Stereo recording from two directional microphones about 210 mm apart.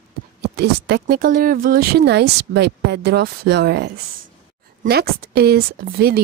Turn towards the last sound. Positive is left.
turn(degrees=-45)  # may be behind; listen again after turning